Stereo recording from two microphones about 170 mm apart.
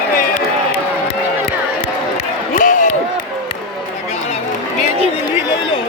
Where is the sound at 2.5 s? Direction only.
50° left (ahead or behind).